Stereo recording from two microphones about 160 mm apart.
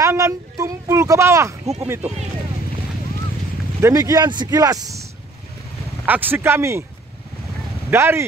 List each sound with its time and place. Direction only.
0.0 s speech: 20° right (ahead or behind)
2.0 s speech: 45° right (ahead or behind)
3.8 s speech: 20° right (ahead or behind)
6.0 s speech: 10° right (ahead or behind)
7.9 s speech: 15° right (ahead or behind)